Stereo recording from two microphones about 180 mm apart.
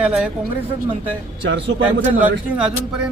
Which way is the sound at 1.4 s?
85° right.